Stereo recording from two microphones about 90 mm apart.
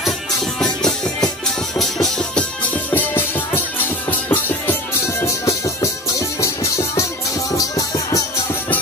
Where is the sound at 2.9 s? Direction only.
20° left (ahead or behind).